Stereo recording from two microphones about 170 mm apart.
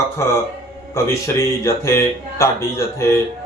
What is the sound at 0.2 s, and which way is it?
A man's voice, 15° left (ahead or behind).